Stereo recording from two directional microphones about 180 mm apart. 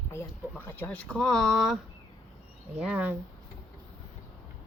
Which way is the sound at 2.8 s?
10° right (ahead or behind).